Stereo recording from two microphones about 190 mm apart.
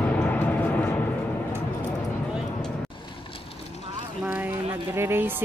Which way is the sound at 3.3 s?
30° left (ahead or behind).